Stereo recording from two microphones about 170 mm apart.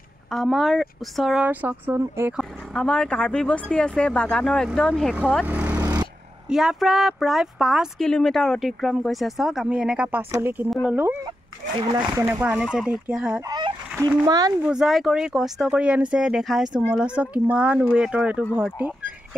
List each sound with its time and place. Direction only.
0.3 s speech: centre (ahead or behind)
2.3 s speech: 5° left (ahead or behind)
5.5 s vehicle: 10° right (ahead or behind)
5.8 s vehicle: 20° right (ahead or behind)
6.5 s speech: centre (ahead or behind)
12.2 s speech: 15° right (ahead or behind)
13.5 s speech: 25° right (ahead or behind)
14.6 s speech: 5° right (ahead or behind)